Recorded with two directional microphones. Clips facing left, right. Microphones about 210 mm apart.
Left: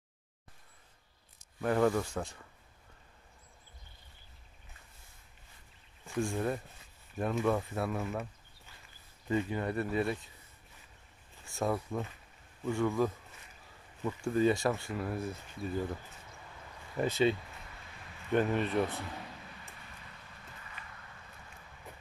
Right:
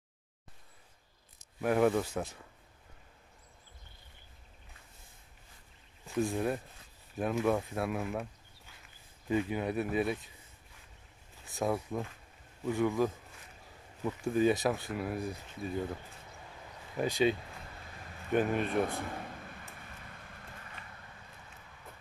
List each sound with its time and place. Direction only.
1.6 s speech: 10° right (ahead or behind)
6.0 s speech: centre (ahead or behind)
9.3 s speech: 10° right (ahead or behind)
11.5 s speech: 5° right (ahead or behind)
15.7 s speech: 5° left (ahead or behind)
17.1 s speech: 10° right (ahead or behind)
18.6 s speech: 50° right (ahead or behind)